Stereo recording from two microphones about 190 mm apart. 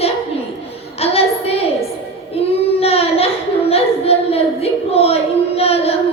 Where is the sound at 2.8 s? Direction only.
30° left (ahead or behind).